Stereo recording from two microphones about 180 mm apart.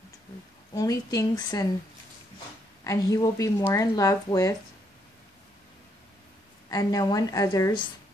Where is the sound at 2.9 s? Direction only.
20° left (ahead or behind).